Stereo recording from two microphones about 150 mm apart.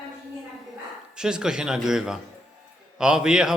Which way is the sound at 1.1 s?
5° right (ahead or behind).